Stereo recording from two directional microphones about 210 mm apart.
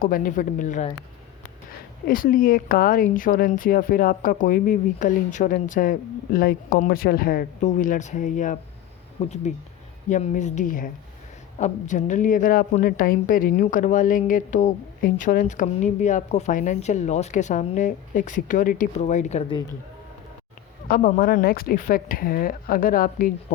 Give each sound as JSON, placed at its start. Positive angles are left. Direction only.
{"t": 0.0, "sound": "a woman's voice", "side_deg": 40}
{"t": 2.0, "sound": "a woman's voice", "side_deg": 45}
{"t": 20.8, "sound": "speech", "side_deg": 40}